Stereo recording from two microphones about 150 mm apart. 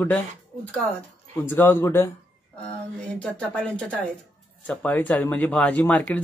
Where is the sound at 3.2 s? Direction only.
5° left (ahead or behind).